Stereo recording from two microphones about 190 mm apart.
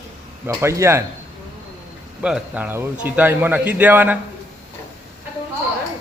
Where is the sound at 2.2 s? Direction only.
5° right (ahead or behind).